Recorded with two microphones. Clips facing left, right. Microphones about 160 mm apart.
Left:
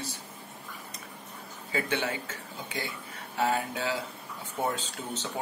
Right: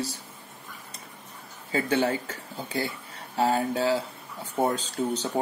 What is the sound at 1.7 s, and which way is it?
Speech, 35° right (ahead or behind).